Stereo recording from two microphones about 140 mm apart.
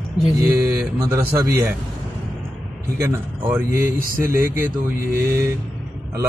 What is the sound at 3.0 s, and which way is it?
Speech, 20° right (ahead or behind).